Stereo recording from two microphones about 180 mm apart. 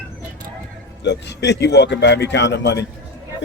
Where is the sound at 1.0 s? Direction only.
75° left (ahead or behind).